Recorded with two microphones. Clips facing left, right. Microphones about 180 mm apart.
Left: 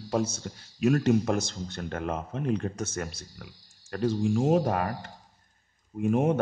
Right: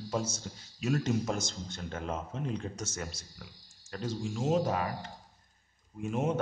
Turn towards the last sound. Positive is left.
turn(degrees=55)  # may be behind; listen again after turning